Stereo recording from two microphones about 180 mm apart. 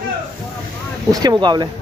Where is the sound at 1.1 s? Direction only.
20° right (ahead or behind).